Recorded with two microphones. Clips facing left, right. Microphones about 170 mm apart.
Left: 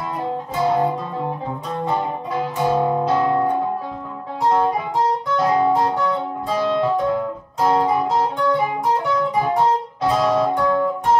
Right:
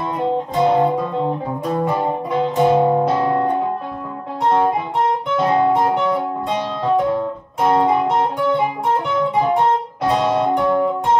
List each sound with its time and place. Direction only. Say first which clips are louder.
0.6 s guitar: right 3 dB; 20° right (ahead or behind)
2.6 s music: right 4 dB; 20° right (ahead or behind)
5.4 s music: right 2 dB; 25° right (ahead or behind)
10.2 s music: right 1 dB; 30° right (ahead or behind)